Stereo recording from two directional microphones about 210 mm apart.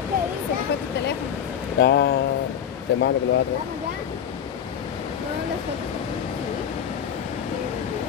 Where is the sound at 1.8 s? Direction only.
55° left (ahead or behind).